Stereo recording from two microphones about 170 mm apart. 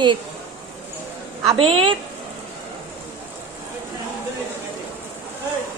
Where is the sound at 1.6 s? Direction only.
30° right (ahead or behind).